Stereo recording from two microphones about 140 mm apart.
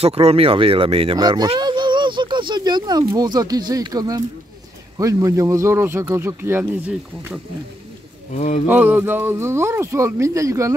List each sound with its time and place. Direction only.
0.0 s speech: 45° right (ahead or behind)
1.1 s speech: 30° right (ahead or behind)
8.4 s speech: 55° left (ahead or behind)
8.6 s speech: 15° right (ahead or behind)